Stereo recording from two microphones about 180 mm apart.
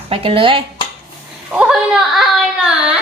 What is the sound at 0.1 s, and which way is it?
Speech, 30° right (ahead or behind).